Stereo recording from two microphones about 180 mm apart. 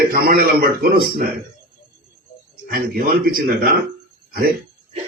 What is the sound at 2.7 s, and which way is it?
Speech, 55° right (ahead or behind).